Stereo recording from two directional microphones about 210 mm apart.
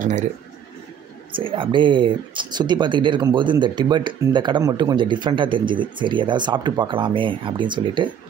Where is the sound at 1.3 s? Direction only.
25° right (ahead or behind).